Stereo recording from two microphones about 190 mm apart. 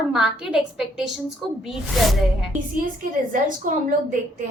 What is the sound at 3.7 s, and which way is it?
Speech, 45° right (ahead or behind).